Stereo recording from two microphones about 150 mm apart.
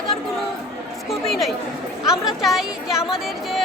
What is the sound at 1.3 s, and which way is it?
Speech, centre (ahead or behind).